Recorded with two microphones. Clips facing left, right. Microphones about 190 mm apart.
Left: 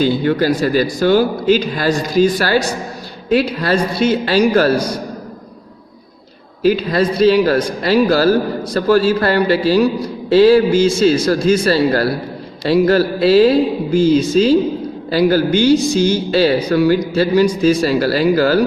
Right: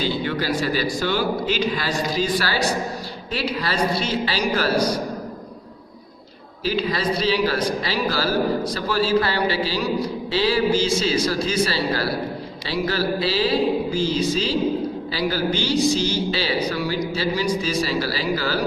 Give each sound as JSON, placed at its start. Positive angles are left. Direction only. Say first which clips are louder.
{"t": 0.0, "sound": "a man's voice", "louder": "left 9 dB", "side_deg": 50}
{"t": 6.7, "sound": "a man's voice", "louder": "left 8 dB", "side_deg": 55}